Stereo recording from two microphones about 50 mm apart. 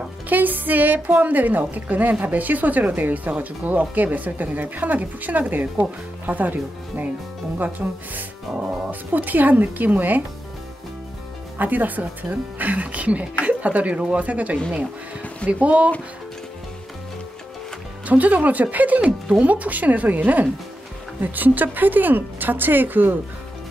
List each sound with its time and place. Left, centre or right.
0.3 s speech: right
11.5 s speech: right
15.6 s speech: right
18.0 s speech: right